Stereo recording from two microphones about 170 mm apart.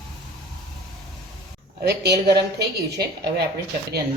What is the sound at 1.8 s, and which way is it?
A woman's voice, 75° right (ahead or behind).